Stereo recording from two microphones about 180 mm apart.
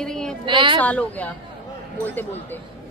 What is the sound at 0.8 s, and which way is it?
A woman's voice, 10° left (ahead or behind).